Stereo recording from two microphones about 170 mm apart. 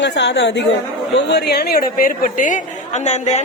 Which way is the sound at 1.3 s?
70° left (ahead or behind).